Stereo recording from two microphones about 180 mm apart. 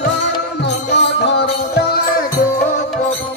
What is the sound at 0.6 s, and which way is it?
Music, 75° left (ahead or behind).